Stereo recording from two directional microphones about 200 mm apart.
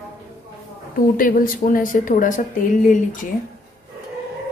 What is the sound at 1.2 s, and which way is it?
A woman's voice, 45° left (ahead or behind).